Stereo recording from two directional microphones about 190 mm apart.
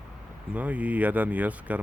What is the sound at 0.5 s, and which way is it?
Speech, 10° right (ahead or behind).